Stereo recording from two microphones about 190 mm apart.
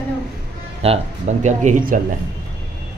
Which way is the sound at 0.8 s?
40° right (ahead or behind).